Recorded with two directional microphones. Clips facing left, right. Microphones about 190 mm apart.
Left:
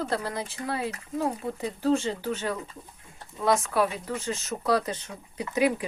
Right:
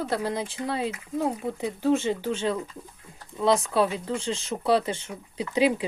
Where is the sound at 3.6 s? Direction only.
25° right (ahead or behind).